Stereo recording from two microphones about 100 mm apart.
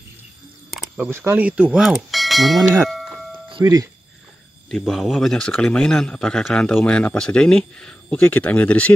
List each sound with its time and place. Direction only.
1.1 s speech: 20° right (ahead or behind); by 2.6 s centre (ahead or behind)
3.6 s speech: 40° right (ahead or behind)
4.6 s speech: 5° left (ahead or behind)